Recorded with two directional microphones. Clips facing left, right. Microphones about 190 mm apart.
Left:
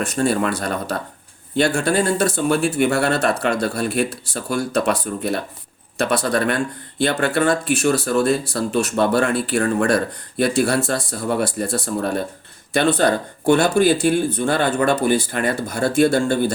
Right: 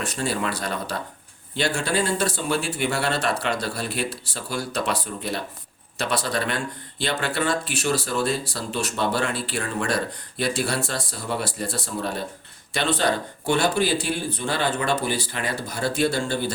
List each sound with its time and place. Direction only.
0.0 s speech: 45° left (ahead or behind)
12.7 s speech: 50° left (ahead or behind)